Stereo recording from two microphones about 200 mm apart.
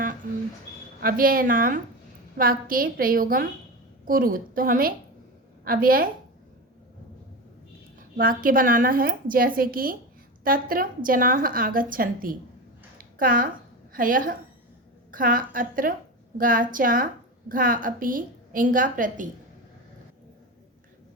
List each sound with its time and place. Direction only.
1.0 s a woman's voice: 45° right (ahead or behind)
7.9 s a woman's voice: 45° right (ahead or behind)
13.0 s a sound: 45° right (ahead or behind)
13.9 s a woman's voice: 45° right (ahead or behind)